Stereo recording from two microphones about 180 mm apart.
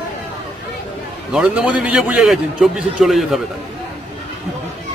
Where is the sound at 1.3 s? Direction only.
5° right (ahead or behind).